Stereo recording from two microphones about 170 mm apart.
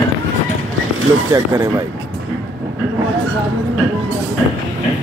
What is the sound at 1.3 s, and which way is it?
Speech, 20° right (ahead or behind).